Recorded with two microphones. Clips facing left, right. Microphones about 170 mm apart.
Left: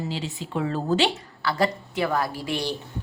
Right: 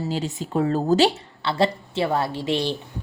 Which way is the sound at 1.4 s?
25° right (ahead or behind).